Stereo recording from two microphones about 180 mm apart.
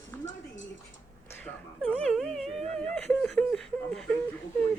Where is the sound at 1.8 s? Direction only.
Centre (ahead or behind).